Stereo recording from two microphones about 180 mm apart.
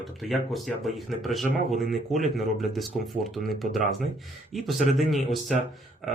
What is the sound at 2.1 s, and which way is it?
Speech, centre (ahead or behind).